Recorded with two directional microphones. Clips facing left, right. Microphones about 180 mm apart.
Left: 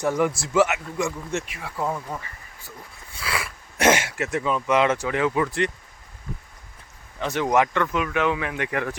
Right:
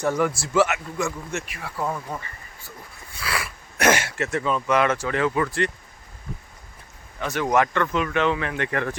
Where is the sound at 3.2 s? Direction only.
20° left (ahead or behind).